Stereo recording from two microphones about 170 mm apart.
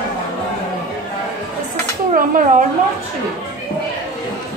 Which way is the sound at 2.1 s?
55° right (ahead or behind).